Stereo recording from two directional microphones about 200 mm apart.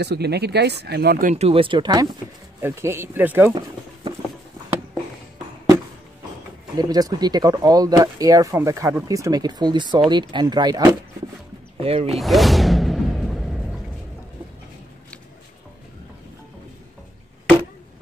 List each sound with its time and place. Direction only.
0.0 s speech: 55° right (ahead or behind); by 3.5 s 10° right (ahead or behind)
6.8 s speech: 20° right (ahead or behind)
11.8 s speech: 30° right (ahead or behind)
12.2 s whoosh: centre (ahead or behind)